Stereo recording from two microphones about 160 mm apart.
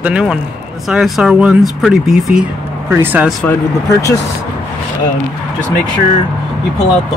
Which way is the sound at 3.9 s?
20° left (ahead or behind).